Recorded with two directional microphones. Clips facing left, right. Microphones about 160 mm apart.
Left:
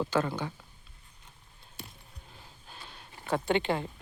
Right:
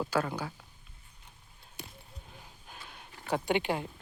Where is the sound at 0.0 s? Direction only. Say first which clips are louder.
Left 2 dB; 10° right (ahead or behind).